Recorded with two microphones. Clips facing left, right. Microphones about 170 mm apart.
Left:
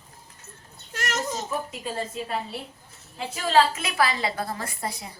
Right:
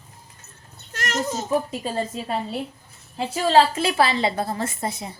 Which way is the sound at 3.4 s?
30° right (ahead or behind).